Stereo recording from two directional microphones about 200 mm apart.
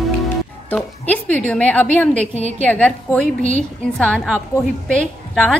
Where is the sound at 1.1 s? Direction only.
5° left (ahead or behind).